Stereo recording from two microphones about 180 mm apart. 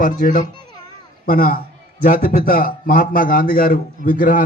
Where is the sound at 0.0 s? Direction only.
50° left (ahead or behind).